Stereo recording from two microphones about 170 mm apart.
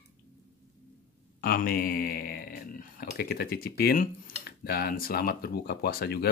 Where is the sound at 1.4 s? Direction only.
60° left (ahead or behind).